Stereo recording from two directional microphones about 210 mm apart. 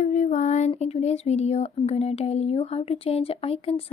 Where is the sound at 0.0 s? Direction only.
35° left (ahead or behind).